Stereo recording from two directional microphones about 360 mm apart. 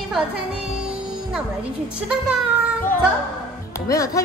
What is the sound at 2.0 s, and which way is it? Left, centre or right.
Speech, centre.